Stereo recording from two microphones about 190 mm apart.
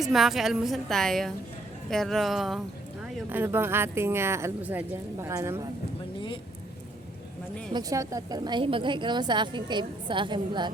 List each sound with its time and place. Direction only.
0.0 s a woman's voice: centre (ahead or behind); by 5.6 s 15° right (ahead or behind)
6.1 s a sound: 25° left (ahead or behind)
7.7 s a woman's voice: 20° right (ahead or behind)